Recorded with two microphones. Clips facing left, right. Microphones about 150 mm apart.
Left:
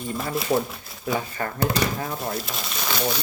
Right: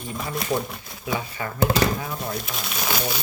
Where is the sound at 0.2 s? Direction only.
Centre (ahead or behind).